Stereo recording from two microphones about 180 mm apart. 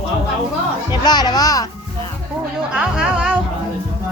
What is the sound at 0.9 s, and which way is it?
Speech, 25° left (ahead or behind).